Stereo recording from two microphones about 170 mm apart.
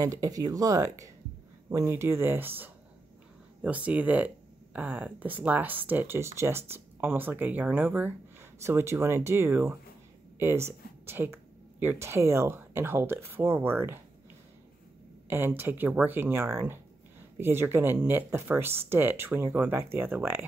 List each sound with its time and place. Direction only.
0.0 s speech: 20° right (ahead or behind)
15.2 s speech: 15° right (ahead or behind)